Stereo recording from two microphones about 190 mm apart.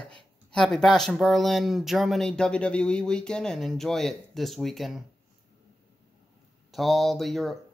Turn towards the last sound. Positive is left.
turn(degrees=0)  # may be behind; listen again after turning